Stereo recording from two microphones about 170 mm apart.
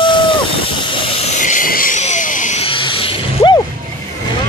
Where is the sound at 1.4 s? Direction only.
50° left (ahead or behind).